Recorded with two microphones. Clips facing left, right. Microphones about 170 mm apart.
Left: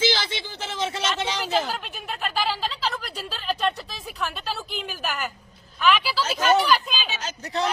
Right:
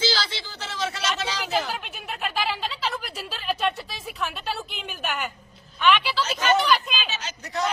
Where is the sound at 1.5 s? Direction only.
Centre (ahead or behind).